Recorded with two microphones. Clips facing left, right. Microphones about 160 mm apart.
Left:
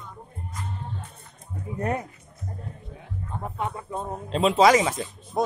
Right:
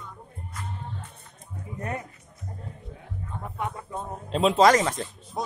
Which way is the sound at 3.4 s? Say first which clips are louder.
Left 2 dB; 25° left (ahead or behind).